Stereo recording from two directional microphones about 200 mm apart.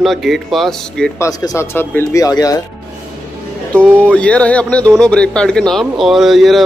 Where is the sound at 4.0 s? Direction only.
5° left (ahead or behind).